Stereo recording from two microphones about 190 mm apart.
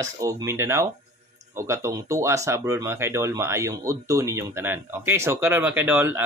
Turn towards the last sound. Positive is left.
turn(degrees=-10)  # may be behind; listen again after turning